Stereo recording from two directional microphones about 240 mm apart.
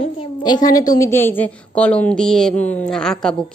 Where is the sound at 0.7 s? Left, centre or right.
Centre.